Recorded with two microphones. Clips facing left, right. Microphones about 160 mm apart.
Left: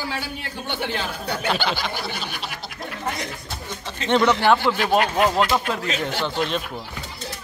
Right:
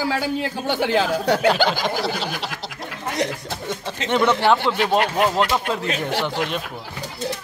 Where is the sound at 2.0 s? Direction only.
85° right.